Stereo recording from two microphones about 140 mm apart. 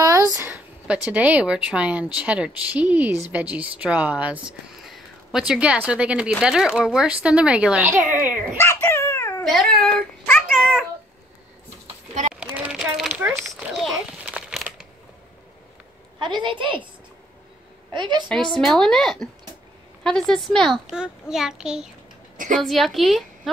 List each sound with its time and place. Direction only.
0.0 s a sound: 25° right (ahead or behind)
0.6 s speech: 10° right (ahead or behind)
8.5 s cat: 15° left (ahead or behind)
9.4 s speech: centre (ahead or behind)
12.4 s a sound: 10° right (ahead or behind)
16.2 s a woman's voice: 35° right (ahead or behind)
17.9 s a woman's voice: 30° right (ahead or behind)
18.3 s a child's voice: 5° left (ahead or behind)